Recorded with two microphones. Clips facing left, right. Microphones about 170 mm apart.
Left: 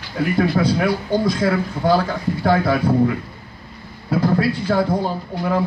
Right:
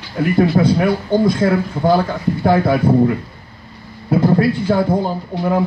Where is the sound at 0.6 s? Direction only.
20° right (ahead or behind).